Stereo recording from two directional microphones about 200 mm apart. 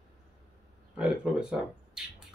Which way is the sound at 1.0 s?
5° right (ahead or behind).